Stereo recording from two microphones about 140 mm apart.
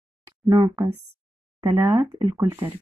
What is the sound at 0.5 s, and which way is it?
A woman's voice, 25° right (ahead or behind).